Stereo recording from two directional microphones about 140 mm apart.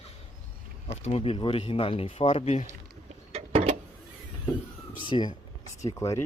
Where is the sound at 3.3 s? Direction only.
50° right (ahead or behind).